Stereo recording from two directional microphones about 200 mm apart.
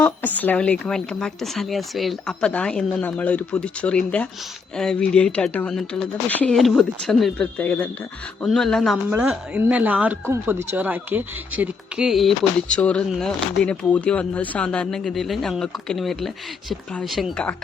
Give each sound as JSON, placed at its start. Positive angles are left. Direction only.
{"t": 0.0, "sound": "speech", "side_deg": 10}